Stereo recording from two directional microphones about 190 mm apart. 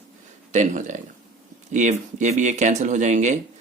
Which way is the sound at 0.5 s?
40° right (ahead or behind).